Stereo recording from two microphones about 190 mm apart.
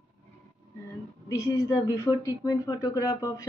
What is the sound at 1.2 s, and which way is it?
A woman's voice, 15° left (ahead or behind).